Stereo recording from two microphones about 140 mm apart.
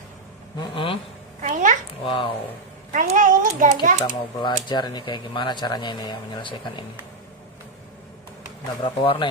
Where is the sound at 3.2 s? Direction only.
65° right (ahead or behind).